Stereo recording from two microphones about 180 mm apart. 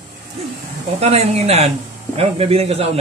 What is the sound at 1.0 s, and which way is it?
Speech, 35° right (ahead or behind).